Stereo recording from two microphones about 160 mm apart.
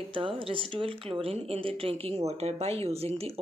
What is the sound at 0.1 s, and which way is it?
Speech, 35° right (ahead or behind).